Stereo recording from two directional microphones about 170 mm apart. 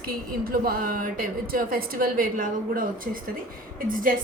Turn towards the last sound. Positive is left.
turn(degrees=-55)  # may be behind; listen again after turning